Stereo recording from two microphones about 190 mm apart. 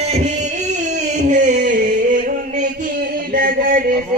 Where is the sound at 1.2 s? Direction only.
45° right (ahead or behind).